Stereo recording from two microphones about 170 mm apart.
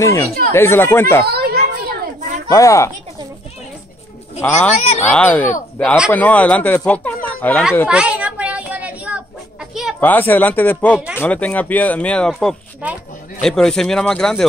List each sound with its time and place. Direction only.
0.0 s speech: 20° left (ahead or behind)
1.2 s children playing: 70° right (ahead or behind)
2.1 s a sound: 45° right (ahead or behind)
2.5 s speech: 20° left (ahead or behind)
4.4 s speech: 10° left (ahead or behind)
4.7 s speech: 40° left (ahead or behind)
5.0 s speech: 10° left (ahead or behind)
7.2 s a sound: 10° left (ahead or behind)
7.9 s chicken: 5° right (ahead or behind)
9.9 s speech: 10° left (ahead or behind)